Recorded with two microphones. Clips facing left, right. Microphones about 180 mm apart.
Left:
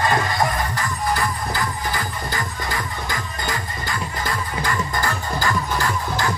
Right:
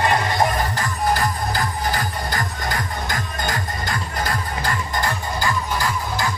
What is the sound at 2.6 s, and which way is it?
Music, 45° right (ahead or behind).